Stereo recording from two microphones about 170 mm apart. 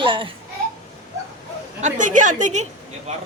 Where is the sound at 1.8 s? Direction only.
45° right (ahead or behind).